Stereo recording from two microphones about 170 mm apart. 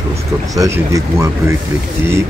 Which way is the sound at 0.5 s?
20° right (ahead or behind).